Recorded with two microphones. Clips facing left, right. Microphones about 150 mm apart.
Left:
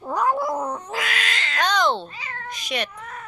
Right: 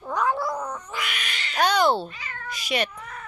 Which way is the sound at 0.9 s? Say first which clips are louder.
Left 5 dB; 90° left.